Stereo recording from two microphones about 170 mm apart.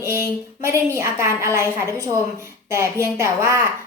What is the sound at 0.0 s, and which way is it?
A woman's voice, 15° right (ahead or behind).